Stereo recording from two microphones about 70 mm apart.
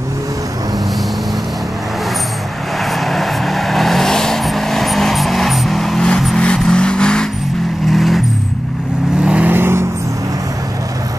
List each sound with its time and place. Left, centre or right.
2.8 s vehicle: centre
7.9 s vehicle: centre
9.2 s vehicle: centre
9.5 s vehicle: right